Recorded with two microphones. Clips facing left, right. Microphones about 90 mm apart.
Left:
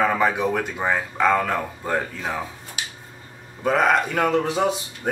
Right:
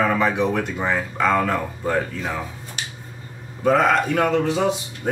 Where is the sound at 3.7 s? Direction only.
10° left (ahead or behind).